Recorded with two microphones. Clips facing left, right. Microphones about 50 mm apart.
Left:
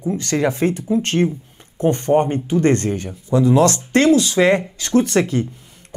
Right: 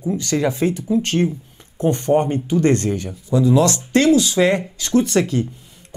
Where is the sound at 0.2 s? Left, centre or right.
Left.